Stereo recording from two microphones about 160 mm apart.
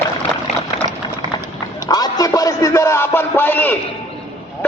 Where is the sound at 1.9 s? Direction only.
25° left (ahead or behind).